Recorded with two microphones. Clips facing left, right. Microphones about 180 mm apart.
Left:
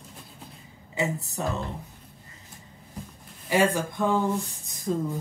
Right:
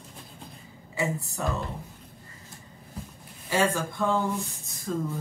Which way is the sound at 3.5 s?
15° left (ahead or behind).